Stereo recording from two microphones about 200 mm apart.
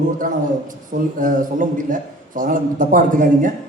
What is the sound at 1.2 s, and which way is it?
A man's voice, 40° right (ahead or behind).